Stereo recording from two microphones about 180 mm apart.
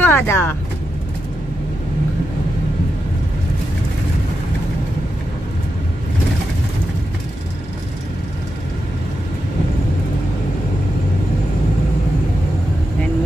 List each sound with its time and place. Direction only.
0.0 s speech: 10° left (ahead or behind)